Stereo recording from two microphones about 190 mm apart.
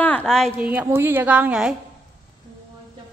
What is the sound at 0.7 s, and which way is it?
A woman's voice, 10° right (ahead or behind).